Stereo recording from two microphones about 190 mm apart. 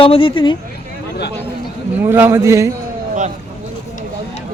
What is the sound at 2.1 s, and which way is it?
Speech, 10° right (ahead or behind).